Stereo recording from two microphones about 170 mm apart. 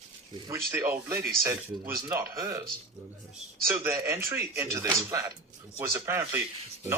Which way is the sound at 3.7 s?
15° right (ahead or behind).